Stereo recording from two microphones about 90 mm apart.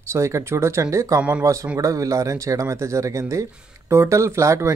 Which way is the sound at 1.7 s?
35° right (ahead or behind).